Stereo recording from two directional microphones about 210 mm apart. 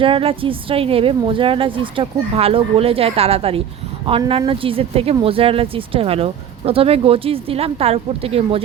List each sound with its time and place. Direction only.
0.0 s speech: 25° right (ahead or behind)